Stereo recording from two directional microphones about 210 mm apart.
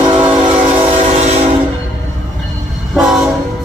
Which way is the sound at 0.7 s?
30° right (ahead or behind).